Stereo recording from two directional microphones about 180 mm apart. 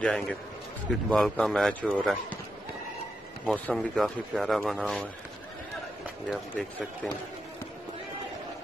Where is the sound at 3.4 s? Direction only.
5° left (ahead or behind).